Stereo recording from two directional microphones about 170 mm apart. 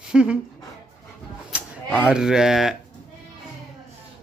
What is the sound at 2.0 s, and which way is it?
Speech, 5° right (ahead or behind).